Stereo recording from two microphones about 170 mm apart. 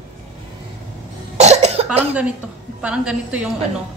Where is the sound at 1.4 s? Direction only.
40° right (ahead or behind).